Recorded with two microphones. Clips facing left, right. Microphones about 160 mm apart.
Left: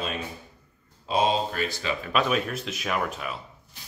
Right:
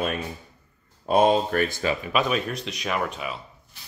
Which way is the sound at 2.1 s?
Centre (ahead or behind).